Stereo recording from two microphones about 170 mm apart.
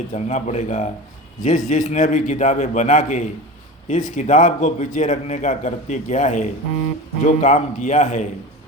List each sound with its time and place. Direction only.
0.1 s a man's voice: 45° left (ahead or behind)